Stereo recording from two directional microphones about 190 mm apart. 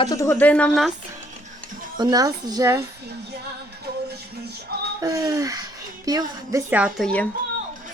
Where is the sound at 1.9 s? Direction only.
20° right (ahead or behind).